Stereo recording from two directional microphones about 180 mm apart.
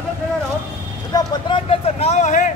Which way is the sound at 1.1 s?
25° left (ahead or behind).